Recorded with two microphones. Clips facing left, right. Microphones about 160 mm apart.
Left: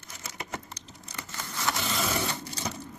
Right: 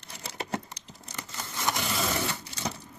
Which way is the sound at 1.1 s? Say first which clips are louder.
Even; 20° right (ahead or behind).